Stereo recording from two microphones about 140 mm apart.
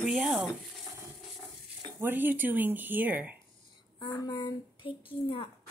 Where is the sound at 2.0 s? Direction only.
15° right (ahead or behind).